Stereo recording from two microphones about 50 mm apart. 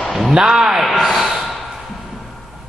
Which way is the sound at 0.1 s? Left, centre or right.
Centre.